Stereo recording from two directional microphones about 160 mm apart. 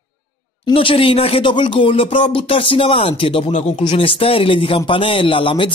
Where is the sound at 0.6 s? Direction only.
35° left (ahead or behind).